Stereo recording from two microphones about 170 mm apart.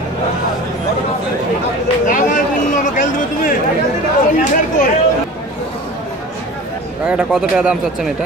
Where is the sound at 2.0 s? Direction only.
50° left (ahead or behind).